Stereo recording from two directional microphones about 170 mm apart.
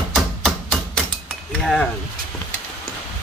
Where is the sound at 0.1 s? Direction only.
Centre (ahead or behind).